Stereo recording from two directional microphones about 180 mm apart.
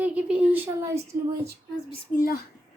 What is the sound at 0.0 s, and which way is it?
Speech, 5° right (ahead or behind).